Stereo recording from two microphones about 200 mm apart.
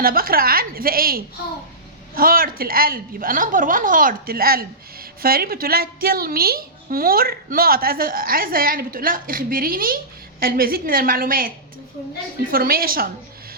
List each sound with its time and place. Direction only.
0.0 s a woman's voice: 45° right (ahead or behind)